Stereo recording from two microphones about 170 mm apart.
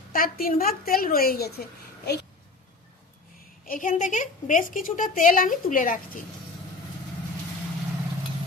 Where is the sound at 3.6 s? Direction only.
55° left (ahead or behind).